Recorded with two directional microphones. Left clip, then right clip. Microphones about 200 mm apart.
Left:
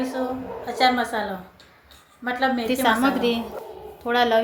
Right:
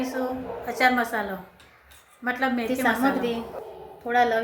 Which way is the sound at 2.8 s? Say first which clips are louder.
Left 3 dB; 30° left (ahead or behind).